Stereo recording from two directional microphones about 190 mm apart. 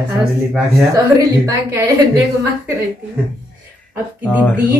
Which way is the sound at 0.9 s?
15° right (ahead or behind).